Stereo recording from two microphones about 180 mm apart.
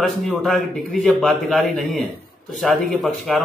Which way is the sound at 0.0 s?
Centre (ahead or behind).